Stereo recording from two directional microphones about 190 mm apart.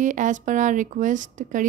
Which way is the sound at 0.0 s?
40° right (ahead or behind).